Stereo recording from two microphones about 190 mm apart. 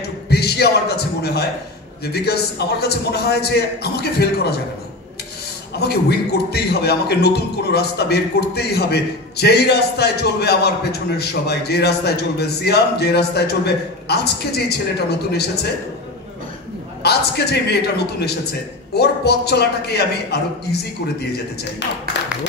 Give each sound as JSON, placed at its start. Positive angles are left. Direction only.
{"t": 0.0, "sound": "a man's voice", "side_deg": 60}
{"t": 5.8, "sound": "a man's voice", "side_deg": 60}
{"t": 17.0, "sound": "a man's voice", "side_deg": 60}